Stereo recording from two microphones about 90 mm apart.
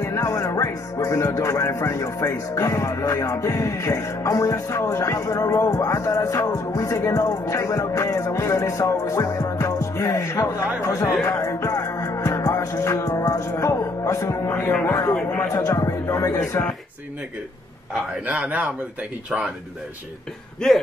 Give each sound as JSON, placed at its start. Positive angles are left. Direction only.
{"t": 0.0, "sound": "speech", "side_deg": 35}
{"t": 11.2, "sound": "music", "side_deg": 35}
{"t": 14.9, "sound": "speech", "side_deg": 40}
{"t": 18.2, "sound": "speech", "side_deg": -15}
{"t": 20.6, "sound": "speech", "side_deg": 5}